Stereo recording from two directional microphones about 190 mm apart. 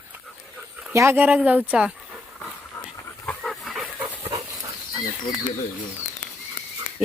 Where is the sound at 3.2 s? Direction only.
Centre (ahead or behind).